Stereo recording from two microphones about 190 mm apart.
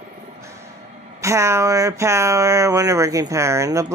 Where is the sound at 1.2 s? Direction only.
15° right (ahead or behind).